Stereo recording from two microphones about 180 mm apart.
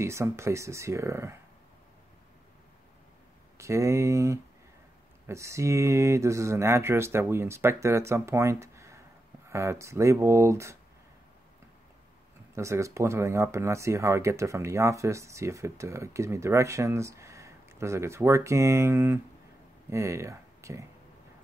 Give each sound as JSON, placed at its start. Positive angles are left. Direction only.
{"t": 0.0, "sound": "speech", "side_deg": -15}
{"t": 3.5, "sound": "speech", "side_deg": -15}
{"t": 12.5, "sound": "speech", "side_deg": -15}